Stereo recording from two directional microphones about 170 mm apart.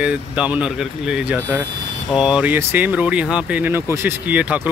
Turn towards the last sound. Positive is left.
turn(degrees=-10)  # may be behind; listen again after turning